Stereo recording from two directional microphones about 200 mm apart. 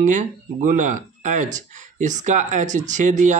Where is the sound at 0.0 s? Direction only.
40° right (ahead or behind).